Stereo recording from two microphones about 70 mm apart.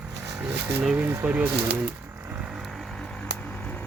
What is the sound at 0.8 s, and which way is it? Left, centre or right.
Speech, centre.